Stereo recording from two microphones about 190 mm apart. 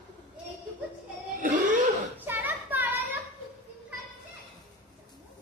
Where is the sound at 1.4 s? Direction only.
40° right (ahead or behind).